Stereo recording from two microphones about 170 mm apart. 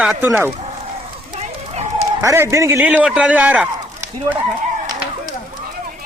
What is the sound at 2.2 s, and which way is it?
A man's voice, 15° right (ahead or behind).